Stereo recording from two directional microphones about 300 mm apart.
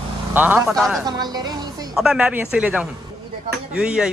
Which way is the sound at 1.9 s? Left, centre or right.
Centre.